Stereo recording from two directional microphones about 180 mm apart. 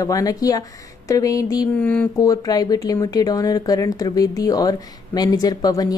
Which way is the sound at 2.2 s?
20° left (ahead or behind).